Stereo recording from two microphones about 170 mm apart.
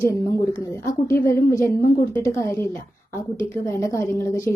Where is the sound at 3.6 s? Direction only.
15° left (ahead or behind).